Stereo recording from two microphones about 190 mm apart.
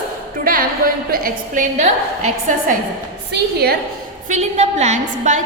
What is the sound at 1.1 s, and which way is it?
A woman's voice, 45° right (ahead or behind).